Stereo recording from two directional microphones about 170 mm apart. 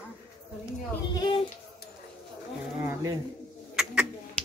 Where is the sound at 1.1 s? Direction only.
25° left (ahead or behind).